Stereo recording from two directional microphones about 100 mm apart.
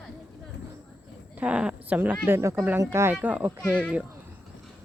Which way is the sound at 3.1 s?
15° right (ahead or behind).